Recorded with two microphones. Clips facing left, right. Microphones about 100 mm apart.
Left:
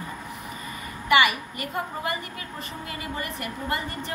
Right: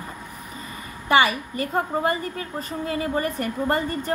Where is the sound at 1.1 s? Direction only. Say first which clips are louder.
Right 2 dB; 30° right (ahead or behind).